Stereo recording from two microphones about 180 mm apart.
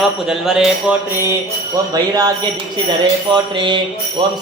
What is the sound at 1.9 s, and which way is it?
Mantra, 20° right (ahead or behind).